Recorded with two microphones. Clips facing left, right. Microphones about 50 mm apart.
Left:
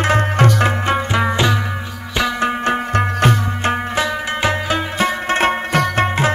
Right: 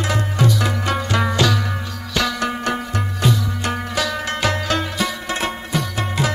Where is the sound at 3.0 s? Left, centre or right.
Left.